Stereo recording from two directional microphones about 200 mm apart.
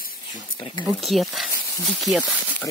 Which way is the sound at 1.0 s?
Centre (ahead or behind).